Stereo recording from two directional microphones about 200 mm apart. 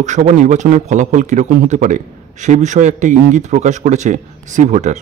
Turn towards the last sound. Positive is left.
turn(degrees=-35)  # may be behind; listen again after turning